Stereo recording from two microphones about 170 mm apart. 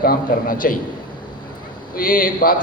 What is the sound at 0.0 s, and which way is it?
Speech, 60° left (ahead or behind).